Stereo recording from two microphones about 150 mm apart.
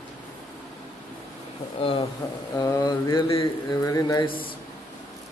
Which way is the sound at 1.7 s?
40° left (ahead or behind).